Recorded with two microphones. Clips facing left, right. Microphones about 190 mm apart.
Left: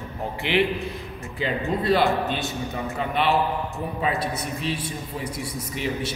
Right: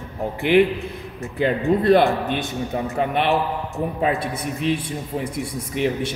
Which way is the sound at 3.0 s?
55° right (ahead or behind).